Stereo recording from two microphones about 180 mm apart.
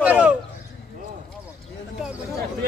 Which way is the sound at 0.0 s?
5° right (ahead or behind).